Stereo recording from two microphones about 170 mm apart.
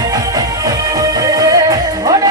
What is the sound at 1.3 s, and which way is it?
Music, 20° right (ahead or behind).